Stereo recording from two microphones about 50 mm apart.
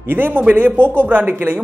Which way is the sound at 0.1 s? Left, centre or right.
Right.